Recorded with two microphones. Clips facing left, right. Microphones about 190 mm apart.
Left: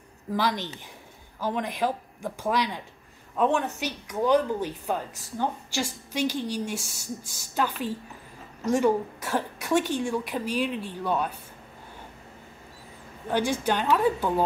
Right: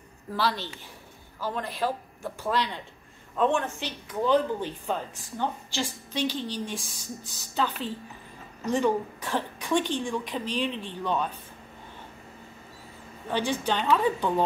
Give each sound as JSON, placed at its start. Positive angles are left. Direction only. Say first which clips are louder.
{"t": 0.3, "sound": "a woman's voice", "louder": "left 2 dB", "side_deg": 15}
{"t": 13.3, "sound": "a woman's voice", "louder": "left 2 dB", "side_deg": 10}